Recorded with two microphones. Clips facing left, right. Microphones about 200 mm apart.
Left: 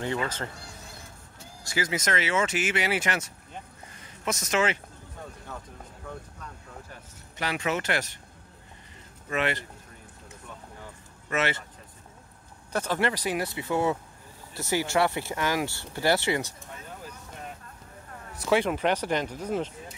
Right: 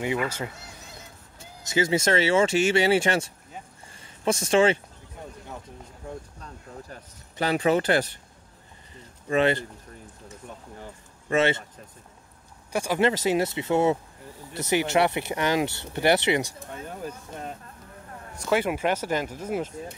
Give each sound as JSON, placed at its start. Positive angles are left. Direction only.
{"t": 0.0, "sound": "speech", "side_deg": -10}
{"t": 1.6, "sound": "speech", "side_deg": -25}
{"t": 6.0, "sound": "speech", "side_deg": -30}
{"t": 9.3, "sound": "speech", "side_deg": -30}
{"t": 11.2, "sound": "speech", "side_deg": -25}
{"t": 12.7, "sound": "speech", "side_deg": -10}
{"t": 13.1, "sound": "speech", "side_deg": -25}
{"t": 18.5, "sound": "speech", "side_deg": -5}